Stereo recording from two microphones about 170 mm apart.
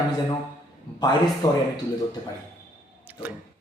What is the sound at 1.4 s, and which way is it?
Speech, 20° left (ahead or behind).